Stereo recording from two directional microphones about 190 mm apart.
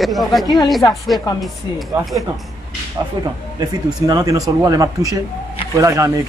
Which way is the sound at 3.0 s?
20° right (ahead or behind).